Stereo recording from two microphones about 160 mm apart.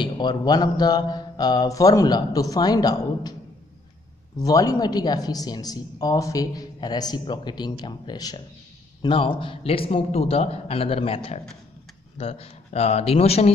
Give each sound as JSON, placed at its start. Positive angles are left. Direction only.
{"t": 0.0, "sound": "speech", "side_deg": 30}
{"t": 4.4, "sound": "a man's voice", "side_deg": 20}